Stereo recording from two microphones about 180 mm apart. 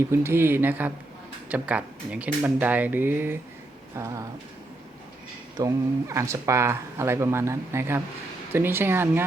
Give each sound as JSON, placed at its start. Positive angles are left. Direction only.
{"t": 0.1, "sound": "speech", "side_deg": -15}
{"t": 5.5, "sound": "speech", "side_deg": -15}